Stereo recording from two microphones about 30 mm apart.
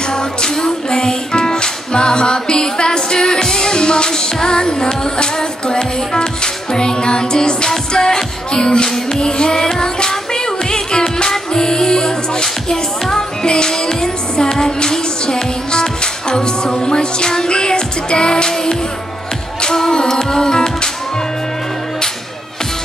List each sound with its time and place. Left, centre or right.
0.1 s music: left